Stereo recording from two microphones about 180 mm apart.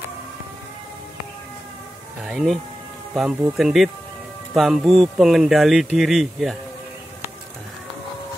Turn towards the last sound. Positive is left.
turn(degrees=0)  # may be behind; listen again after turning